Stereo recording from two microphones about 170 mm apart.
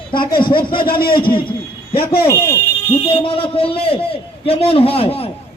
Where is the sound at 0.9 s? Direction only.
60° left (ahead or behind).